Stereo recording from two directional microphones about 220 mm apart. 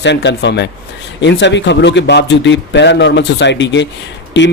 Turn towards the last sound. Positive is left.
turn(degrees=55)  # may be behind; listen again after turning